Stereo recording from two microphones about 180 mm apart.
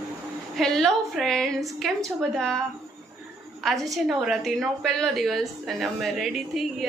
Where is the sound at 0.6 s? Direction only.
Centre (ahead or behind).